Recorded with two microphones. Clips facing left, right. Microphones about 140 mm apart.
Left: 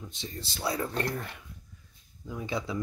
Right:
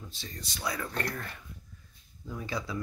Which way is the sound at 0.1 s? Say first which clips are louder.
Left 4 dB; 25° left (ahead or behind).